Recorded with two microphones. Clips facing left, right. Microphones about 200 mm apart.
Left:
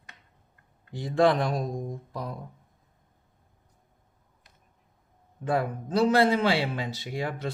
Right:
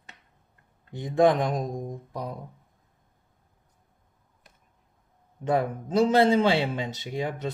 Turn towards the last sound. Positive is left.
turn(degrees=-20)  # may be behind; listen again after turning